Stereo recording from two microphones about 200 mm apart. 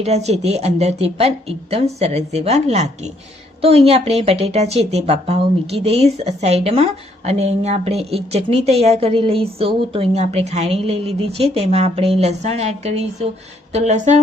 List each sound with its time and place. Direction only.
0.0 s speech: 35° right (ahead or behind)